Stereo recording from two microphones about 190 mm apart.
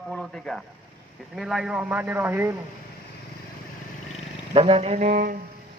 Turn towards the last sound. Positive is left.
turn(degrees=-45)  # may be behind; listen again after turning